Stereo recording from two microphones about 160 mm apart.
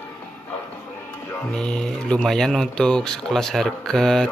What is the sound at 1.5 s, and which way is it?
Speech, 5° left (ahead or behind).